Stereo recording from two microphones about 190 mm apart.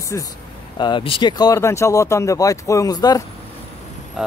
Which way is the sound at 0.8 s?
25° left (ahead or behind).